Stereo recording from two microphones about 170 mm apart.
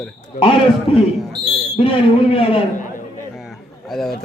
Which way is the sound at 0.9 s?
35° left (ahead or behind).